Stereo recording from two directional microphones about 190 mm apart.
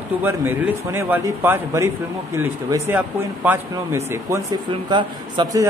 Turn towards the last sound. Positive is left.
turn(degrees=-20)  # may be behind; listen again after turning